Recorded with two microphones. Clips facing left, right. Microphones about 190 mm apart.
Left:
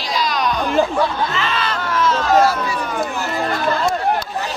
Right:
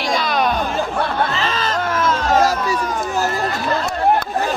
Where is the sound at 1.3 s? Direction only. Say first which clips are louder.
Right 1 dB; 40° right (ahead or behind).